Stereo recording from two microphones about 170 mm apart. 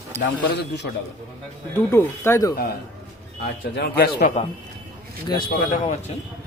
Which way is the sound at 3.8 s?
70° left (ahead or behind).